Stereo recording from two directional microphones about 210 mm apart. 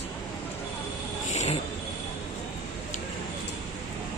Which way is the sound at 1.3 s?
35° left (ahead or behind).